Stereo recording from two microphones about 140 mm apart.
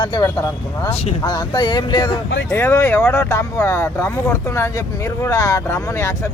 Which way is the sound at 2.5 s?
15° left (ahead or behind).